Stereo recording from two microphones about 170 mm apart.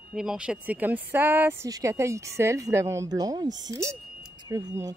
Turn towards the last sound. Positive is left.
turn(degrees=-20)  # may be behind; listen again after turning